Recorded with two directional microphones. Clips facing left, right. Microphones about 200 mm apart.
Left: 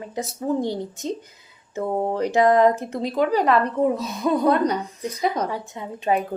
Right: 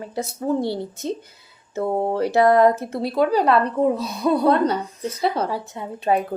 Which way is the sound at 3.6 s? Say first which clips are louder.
Right 1 dB; 35° right (ahead or behind).